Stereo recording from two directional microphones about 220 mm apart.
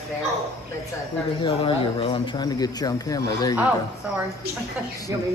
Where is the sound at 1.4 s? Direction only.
25° left (ahead or behind).